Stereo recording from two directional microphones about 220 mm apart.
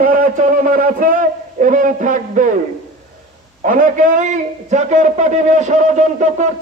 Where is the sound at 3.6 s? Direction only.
35° right (ahead or behind).